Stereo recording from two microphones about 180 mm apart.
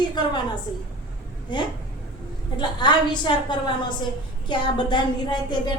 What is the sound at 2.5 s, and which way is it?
A woman's voice, 25° left (ahead or behind).